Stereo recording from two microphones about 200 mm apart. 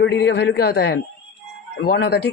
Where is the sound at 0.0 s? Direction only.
60° left (ahead or behind).